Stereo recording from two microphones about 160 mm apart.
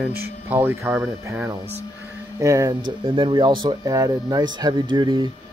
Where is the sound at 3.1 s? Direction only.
30° right (ahead or behind).